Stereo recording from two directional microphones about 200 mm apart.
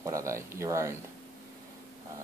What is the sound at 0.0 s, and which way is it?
Speech, 15° right (ahead or behind).